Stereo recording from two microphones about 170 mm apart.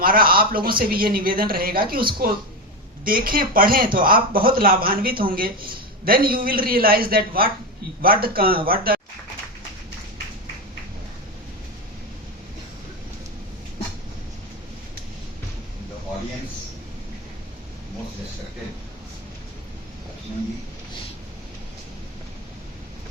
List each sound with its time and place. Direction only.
0.0 s speech: 60° right (ahead or behind)